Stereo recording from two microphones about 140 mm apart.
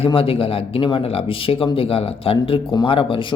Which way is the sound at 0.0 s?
40° left (ahead or behind).